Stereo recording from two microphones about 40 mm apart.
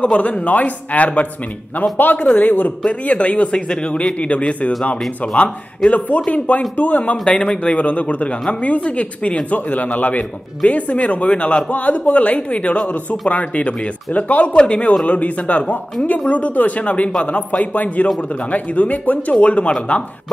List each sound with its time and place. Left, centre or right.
0.0 s speech: left
1.8 s speech: left
2.9 s speech: left